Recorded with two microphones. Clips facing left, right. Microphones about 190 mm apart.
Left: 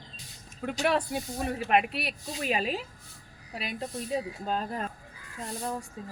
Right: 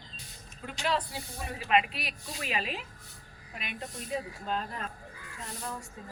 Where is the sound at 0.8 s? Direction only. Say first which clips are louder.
Left 4 dB; 60° left (ahead or behind); by 4.8 s 40° left (ahead or behind).